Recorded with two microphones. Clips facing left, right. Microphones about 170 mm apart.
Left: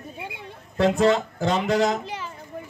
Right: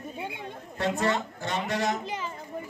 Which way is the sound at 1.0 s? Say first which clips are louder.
Left 8 dB; 90° left.